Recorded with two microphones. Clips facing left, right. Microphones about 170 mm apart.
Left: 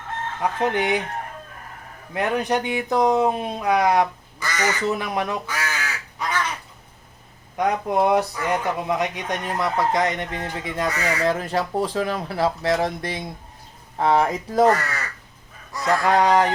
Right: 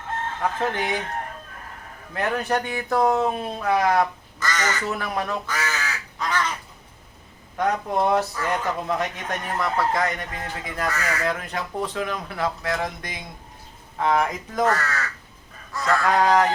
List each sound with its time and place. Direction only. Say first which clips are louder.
0.6 s speech: left 6 dB; 15° left (ahead or behind)
2.1 s speech: left 2 dB; 15° left (ahead or behind)
7.5 s speech: left 2 dB; 15° left (ahead or behind); by 14.7 s 30° left (ahead or behind)
14.7 s speech: left 3 dB; 15° left (ahead or behind)